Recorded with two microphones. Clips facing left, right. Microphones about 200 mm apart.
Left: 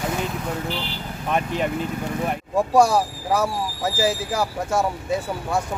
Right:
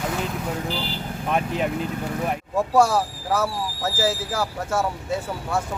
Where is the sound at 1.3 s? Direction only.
Centre (ahead or behind).